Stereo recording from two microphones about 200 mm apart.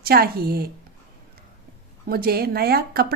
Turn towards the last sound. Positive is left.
turn(degrees=-50)  # may be behind; listen again after turning